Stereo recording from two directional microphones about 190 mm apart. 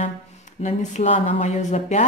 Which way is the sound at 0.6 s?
40° left (ahead or behind).